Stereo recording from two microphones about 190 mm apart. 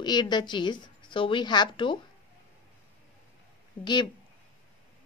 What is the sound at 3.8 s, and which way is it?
Speech, 25° left (ahead or behind).